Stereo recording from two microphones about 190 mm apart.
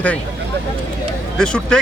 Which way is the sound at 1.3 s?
5° left (ahead or behind).